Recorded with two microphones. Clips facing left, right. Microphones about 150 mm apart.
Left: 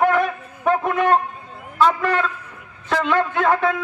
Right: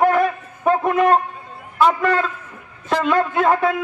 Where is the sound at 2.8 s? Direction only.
10° right (ahead or behind).